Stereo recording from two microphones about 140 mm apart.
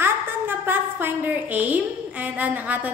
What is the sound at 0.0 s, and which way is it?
A woman's voice, 15° right (ahead or behind).